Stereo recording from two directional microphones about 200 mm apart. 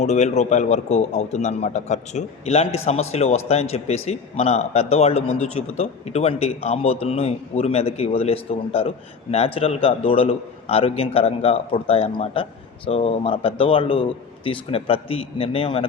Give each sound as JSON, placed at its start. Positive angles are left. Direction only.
{"t": 0.0, "sound": "a man's voice", "side_deg": 35}